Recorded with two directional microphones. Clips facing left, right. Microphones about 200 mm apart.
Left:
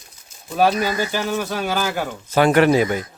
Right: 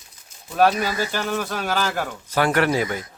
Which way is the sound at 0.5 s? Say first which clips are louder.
Left 1 dB; centre (ahead or behind).